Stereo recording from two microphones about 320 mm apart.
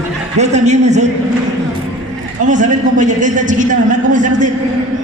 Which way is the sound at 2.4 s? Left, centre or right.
Right.